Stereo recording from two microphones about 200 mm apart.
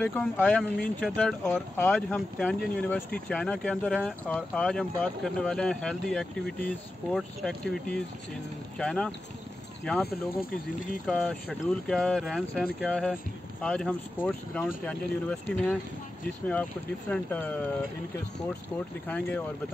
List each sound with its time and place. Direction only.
0.0 s speech: 5° left (ahead or behind)
10.0 s speech: 45° left (ahead or behind)
11.1 s speech: 5° left (ahead or behind)
17.1 s speech: 10° left (ahead or behind)
19.0 s speech: 5° left (ahead or behind)